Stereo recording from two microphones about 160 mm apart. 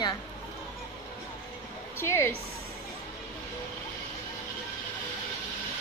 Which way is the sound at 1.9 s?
15° left (ahead or behind).